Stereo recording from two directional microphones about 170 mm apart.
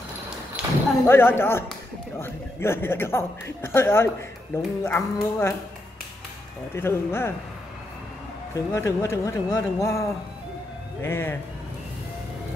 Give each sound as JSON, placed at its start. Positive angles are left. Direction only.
{"t": 0.6, "sound": "a sound", "side_deg": -5}
{"t": 1.0, "sound": "a man's voice", "side_deg": 15}
{"t": 6.7, "sound": "a man's voice", "side_deg": 15}
{"t": 8.5, "sound": "a man's voice", "side_deg": 15}